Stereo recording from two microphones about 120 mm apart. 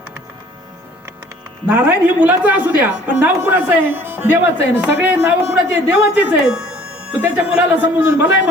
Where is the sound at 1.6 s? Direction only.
10° right (ahead or behind).